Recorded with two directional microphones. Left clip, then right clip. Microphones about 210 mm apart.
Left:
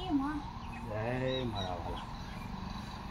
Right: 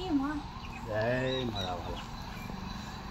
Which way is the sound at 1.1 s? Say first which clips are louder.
Even; 10° right (ahead or behind).